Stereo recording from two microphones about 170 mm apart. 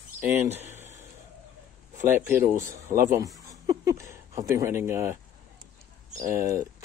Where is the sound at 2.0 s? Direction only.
15° right (ahead or behind).